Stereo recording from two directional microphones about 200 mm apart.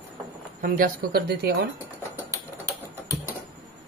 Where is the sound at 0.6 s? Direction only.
45° right (ahead or behind).